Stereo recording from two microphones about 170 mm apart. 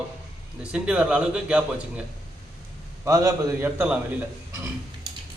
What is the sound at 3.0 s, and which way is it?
Speech, 20° right (ahead or behind).